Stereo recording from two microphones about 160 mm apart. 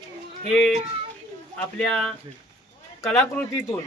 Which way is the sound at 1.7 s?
5° left (ahead or behind).